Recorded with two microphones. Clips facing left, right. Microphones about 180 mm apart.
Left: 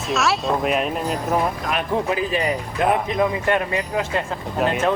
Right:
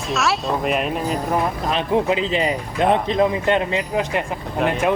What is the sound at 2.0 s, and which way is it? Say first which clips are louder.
Speech: right 2 dB; 20° right (ahead or behind).